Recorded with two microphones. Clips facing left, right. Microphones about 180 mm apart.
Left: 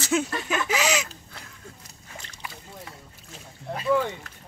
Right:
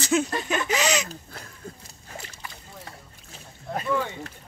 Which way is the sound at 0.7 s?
5° left (ahead or behind).